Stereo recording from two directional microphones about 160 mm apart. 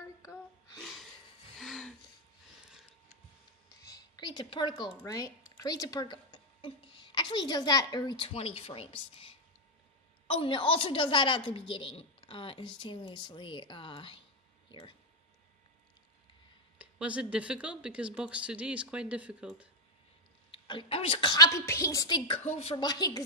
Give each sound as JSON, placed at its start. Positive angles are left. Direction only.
{"t": 0.7, "sound": "a sound", "side_deg": 0}
{"t": 3.8, "sound": "a sound", "side_deg": 25}
{"t": 5.0, "sound": "a woman's voice", "side_deg": 20}
{"t": 16.7, "sound": "speech", "side_deg": -10}
{"t": 20.5, "sound": "a woman's voice", "side_deg": 30}
{"t": 22.4, "sound": "speech", "side_deg": 45}
{"t": 22.8, "sound": "a woman's voice", "side_deg": 25}